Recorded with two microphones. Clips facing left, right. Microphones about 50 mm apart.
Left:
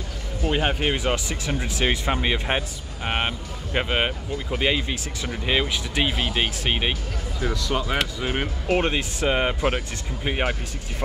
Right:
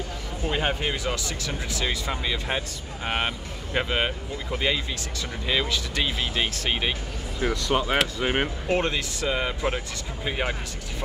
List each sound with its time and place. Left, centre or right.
0.5 s speech: left
3.1 s speech: centre
7.3 s speech: right
8.7 s speech: left